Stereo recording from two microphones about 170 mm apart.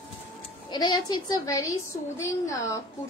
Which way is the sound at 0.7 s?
25° left (ahead or behind).